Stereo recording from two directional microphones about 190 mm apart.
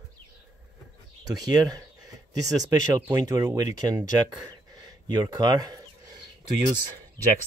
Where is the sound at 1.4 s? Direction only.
20° right (ahead or behind).